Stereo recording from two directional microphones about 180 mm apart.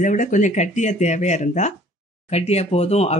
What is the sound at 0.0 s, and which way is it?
Speech, 45° left (ahead or behind).